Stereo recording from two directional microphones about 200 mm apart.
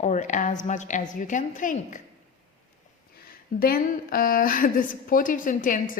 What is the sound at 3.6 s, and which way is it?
A woman's voice, 50° left (ahead or behind).